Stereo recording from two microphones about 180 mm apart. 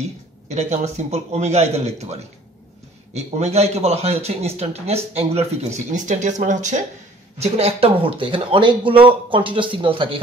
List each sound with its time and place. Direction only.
0.5 s speech: 40° right (ahead or behind)
3.2 s speech: 35° right (ahead or behind)